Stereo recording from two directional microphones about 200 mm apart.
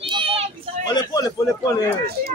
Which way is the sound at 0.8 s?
20° left (ahead or behind).